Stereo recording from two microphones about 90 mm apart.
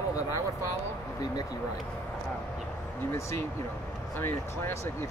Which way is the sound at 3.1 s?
30° left (ahead or behind).